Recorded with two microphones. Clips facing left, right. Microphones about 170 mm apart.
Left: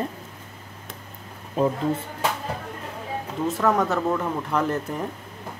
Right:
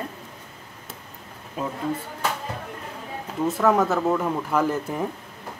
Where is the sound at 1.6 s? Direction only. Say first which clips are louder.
Left 8 dB; 30° left (ahead or behind).